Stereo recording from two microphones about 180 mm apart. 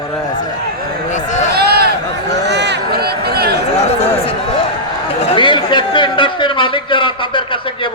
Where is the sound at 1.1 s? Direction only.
40° left (ahead or behind).